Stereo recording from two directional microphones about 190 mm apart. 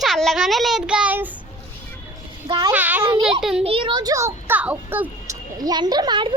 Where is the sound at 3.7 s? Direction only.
25° right (ahead or behind).